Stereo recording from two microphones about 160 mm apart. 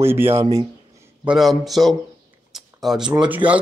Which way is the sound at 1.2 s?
5° right (ahead or behind).